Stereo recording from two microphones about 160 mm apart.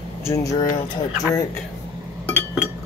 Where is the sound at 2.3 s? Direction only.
15° left (ahead or behind).